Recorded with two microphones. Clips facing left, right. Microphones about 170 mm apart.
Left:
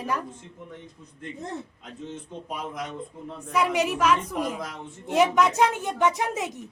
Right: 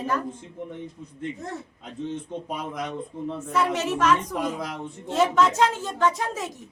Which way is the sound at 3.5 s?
10° left (ahead or behind).